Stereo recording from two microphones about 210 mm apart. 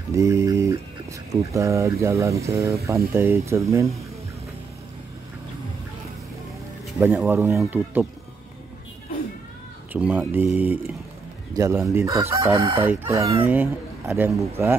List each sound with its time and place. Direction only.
0.1 s speech: 15° right (ahead or behind)
7.0 s speech: 10° right (ahead or behind)
9.9 s speech: 5° right (ahead or behind)
12.5 s chicken: 25° right (ahead or behind)
13.0 s speech: 15° right (ahead or behind)